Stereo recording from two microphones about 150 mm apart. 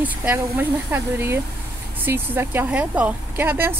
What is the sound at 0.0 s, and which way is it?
A woman's voice, 10° right (ahead or behind).